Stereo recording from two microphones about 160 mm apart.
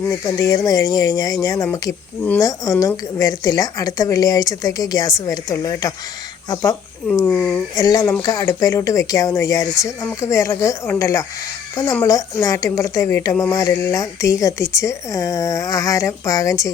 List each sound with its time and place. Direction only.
0.3 s speech: 20° left (ahead or behind)
7.3 s speech: 5° left (ahead or behind)
7.8 s speech: 25° left (ahead or behind)